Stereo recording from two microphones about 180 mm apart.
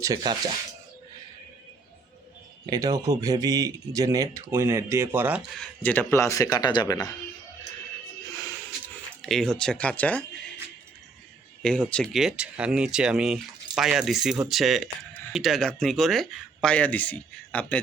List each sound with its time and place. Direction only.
0.0 s speech: 20° right (ahead or behind)
2.6 s speech: 20° right (ahead or behind)
5.4 s speech: 5° left (ahead or behind); by 7.0 s 20° left (ahead or behind)
9.2 s speech: centre (ahead or behind)
11.6 s speech: 5° left (ahead or behind)